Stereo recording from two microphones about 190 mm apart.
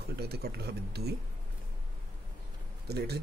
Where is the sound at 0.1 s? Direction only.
55° right (ahead or behind).